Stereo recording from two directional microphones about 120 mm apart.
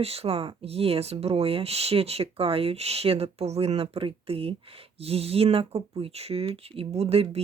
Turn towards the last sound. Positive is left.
turn(degrees=-55)  # may be behind; listen again after turning